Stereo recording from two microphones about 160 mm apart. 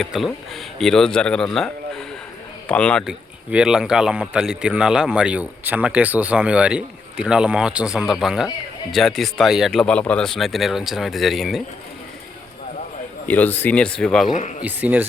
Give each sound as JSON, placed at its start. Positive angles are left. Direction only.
{"t": 0.0, "sound": "a man's voice", "side_deg": 0}
{"t": 3.1, "sound": "a man's voice", "side_deg": -5}
{"t": 13.2, "sound": "speech", "side_deg": 10}
{"t": 14.3, "sound": "speech", "side_deg": 50}
{"t": 14.6, "sound": "speech", "side_deg": -10}